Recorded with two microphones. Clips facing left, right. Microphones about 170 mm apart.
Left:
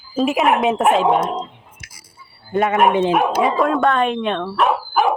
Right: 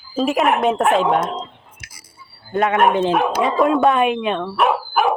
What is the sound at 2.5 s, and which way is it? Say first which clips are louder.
Speech: left 1 dB; centre (ahead or behind).